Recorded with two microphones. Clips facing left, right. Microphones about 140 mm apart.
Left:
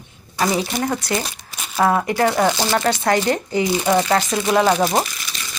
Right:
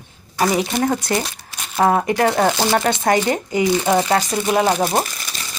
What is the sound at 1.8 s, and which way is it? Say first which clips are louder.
Speech: right 1 dB; 30° right (ahead or behind).